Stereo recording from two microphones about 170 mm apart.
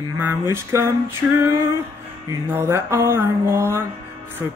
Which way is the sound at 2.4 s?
15° right (ahead or behind).